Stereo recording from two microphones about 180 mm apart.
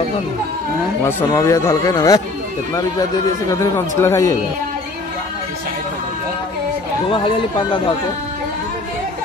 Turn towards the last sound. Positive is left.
turn(degrees=25)  # may be behind; listen again after turning